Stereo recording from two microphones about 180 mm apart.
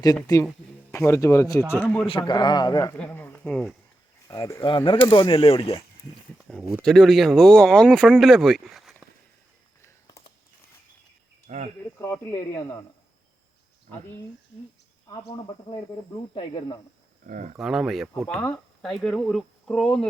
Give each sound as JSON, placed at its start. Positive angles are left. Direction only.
{"t": 0.0, "sound": "a man's voice", "side_deg": 20}
{"t": 2.0, "sound": "speech", "side_deg": 25}
{"t": 3.0, "sound": "speech", "side_deg": 10}
{"t": 4.3, "sound": "speech", "side_deg": 15}
{"t": 6.5, "sound": "speech", "side_deg": -5}
{"t": 9.8, "sound": "a sound", "side_deg": 15}
{"t": 11.4, "sound": "speech", "side_deg": -35}
{"t": 11.9, "sound": "a man's voice", "side_deg": 15}
{"t": 16.1, "sound": "speech", "side_deg": 30}
{"t": 17.2, "sound": "speech", "side_deg": -45}
{"t": 17.6, "sound": "speech", "side_deg": 0}